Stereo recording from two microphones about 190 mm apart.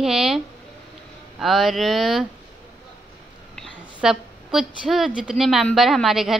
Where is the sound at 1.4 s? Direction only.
Centre (ahead or behind).